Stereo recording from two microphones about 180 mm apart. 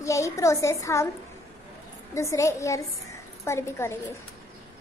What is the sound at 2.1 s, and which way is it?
A woman's voice, 15° left (ahead or behind).